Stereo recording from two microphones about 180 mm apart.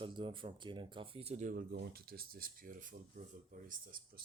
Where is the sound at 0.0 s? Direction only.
30° right (ahead or behind); by 2.5 s 55° right (ahead or behind).